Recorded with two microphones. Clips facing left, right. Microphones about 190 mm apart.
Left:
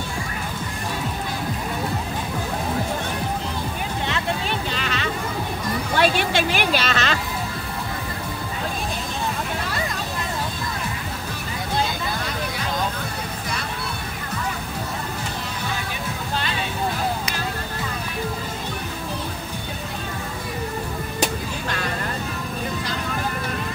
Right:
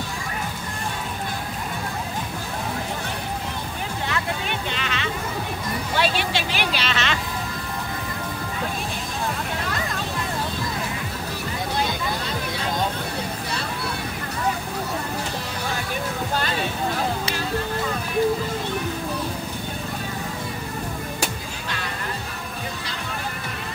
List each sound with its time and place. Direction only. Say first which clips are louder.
4.1 s vehicle: left 2 dB; 35° left (ahead or behind)
5.9 s music: left 4 dB; 50° left (ahead or behind)